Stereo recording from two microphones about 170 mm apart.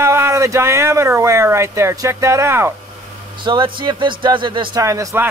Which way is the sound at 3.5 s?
30° right (ahead or behind).